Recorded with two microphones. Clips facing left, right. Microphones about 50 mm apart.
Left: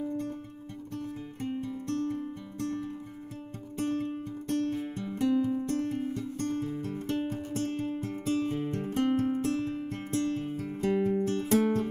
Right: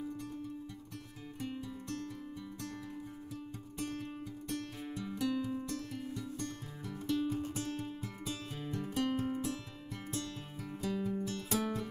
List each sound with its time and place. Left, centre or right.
1.4 s music: left